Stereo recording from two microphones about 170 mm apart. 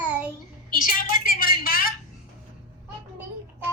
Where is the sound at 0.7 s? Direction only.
55° left (ahead or behind).